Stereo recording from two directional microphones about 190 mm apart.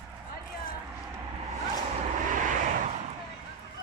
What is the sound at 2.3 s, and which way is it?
Vehicle, 40° right (ahead or behind).